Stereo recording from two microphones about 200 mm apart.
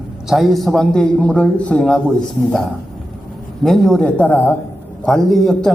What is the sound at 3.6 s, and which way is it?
A man's voice, centre (ahead or behind).